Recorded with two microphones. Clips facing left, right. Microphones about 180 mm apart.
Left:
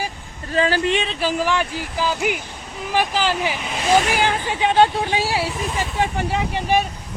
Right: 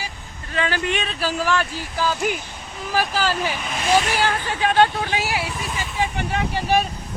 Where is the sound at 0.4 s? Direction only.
35° left (ahead or behind).